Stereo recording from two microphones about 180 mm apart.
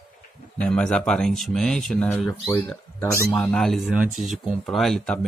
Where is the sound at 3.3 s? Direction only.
5° left (ahead or behind).